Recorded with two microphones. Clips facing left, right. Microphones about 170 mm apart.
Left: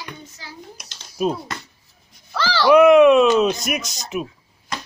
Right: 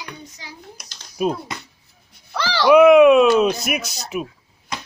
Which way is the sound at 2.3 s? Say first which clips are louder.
Left 1 dB; 20° right (ahead or behind).